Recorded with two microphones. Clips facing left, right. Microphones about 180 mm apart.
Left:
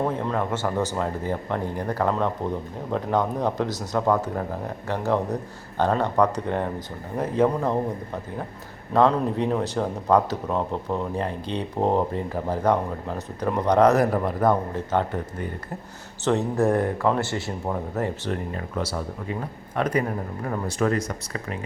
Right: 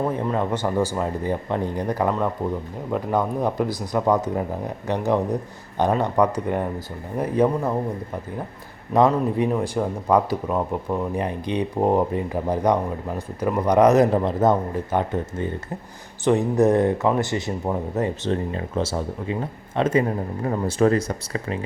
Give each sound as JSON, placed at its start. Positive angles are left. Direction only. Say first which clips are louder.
{"t": 0.0, "sound": "speech", "louder": "right 2 dB", "side_deg": -10}
{"t": 8.9, "sound": "speech", "louder": "right 2 dB", "side_deg": -15}